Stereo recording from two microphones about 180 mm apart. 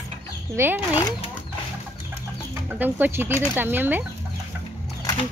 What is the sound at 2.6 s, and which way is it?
Speech, 10° right (ahead or behind).